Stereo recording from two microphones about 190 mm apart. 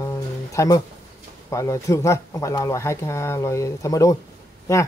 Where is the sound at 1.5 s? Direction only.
15° left (ahead or behind).